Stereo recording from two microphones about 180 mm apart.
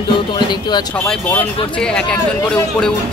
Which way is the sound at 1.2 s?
10° left (ahead or behind).